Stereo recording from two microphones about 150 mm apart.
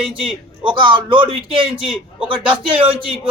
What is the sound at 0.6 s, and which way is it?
Speech, 35° right (ahead or behind).